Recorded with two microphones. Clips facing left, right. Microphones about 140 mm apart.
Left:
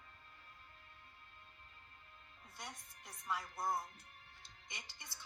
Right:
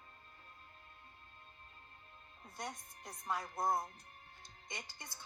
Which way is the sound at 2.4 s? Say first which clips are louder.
Right 7 dB; 45° right (ahead or behind).